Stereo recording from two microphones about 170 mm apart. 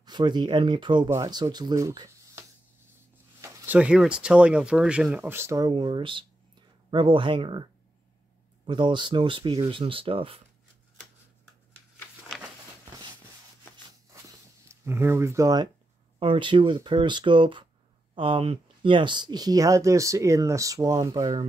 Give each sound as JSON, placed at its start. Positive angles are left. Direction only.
{"t": 0.0, "sound": "speech", "side_deg": -25}
{"t": 14.7, "sound": "speech", "side_deg": -15}